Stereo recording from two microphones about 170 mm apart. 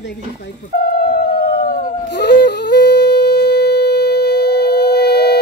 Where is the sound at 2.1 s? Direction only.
80° left.